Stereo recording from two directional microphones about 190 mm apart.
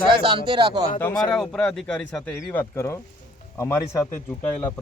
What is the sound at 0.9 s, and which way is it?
Speech, 15° left (ahead or behind).